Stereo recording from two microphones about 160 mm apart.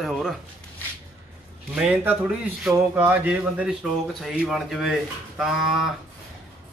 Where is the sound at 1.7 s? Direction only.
10° right (ahead or behind).